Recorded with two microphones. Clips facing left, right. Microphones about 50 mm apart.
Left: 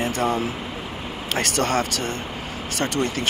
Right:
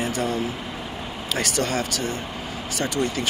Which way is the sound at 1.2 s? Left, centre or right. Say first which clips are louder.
Left 2 dB; left.